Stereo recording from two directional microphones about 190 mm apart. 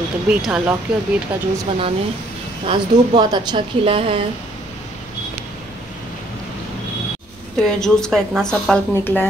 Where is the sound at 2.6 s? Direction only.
25° right (ahead or behind).